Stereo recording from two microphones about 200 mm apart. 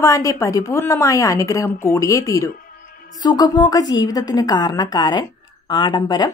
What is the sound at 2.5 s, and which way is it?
Music, 45° left (ahead or behind).